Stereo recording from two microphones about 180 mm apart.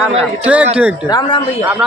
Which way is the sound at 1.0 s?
25° left (ahead or behind).